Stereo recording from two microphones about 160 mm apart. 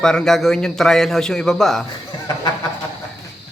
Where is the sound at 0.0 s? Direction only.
5° left (ahead or behind).